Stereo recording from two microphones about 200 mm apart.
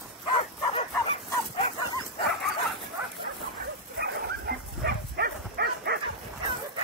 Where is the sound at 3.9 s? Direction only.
55° right (ahead or behind).